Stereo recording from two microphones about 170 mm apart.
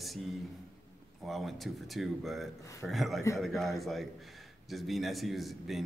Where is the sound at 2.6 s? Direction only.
20° left (ahead or behind).